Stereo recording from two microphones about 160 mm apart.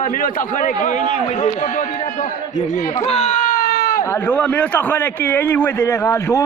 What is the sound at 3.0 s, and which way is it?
Baby cry, 40° left (ahead or behind).